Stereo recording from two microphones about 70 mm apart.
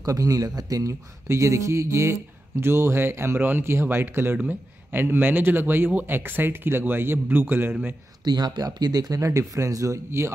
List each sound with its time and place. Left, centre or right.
0.0 s a man's voice: right
8.2 s speech: right